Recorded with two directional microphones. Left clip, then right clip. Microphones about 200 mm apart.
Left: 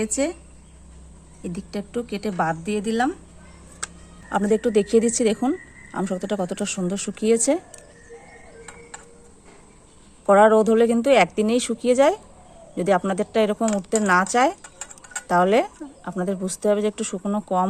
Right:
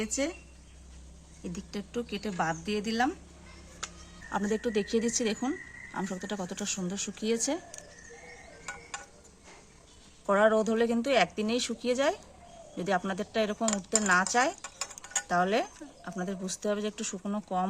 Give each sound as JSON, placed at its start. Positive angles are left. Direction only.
{"t": 0.2, "sound": "speech", "side_deg": 45}
{"t": 1.5, "sound": "speech", "side_deg": 40}
{"t": 4.3, "sound": "speech", "side_deg": 35}
{"t": 10.2, "sound": "speech", "side_deg": 35}